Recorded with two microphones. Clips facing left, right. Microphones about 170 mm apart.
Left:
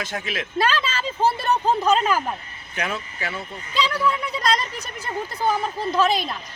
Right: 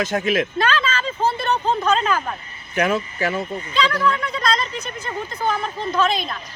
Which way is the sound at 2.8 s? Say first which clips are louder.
Right 8 dB; 40° right (ahead or behind).